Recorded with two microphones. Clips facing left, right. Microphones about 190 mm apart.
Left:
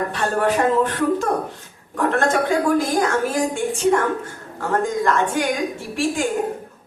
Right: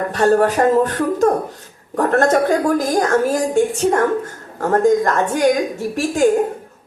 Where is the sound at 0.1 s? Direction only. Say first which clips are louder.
Right 6 dB; 45° right (ahead or behind).